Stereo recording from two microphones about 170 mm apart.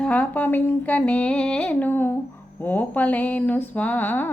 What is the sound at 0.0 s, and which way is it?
Mantra, 10° left (ahead or behind).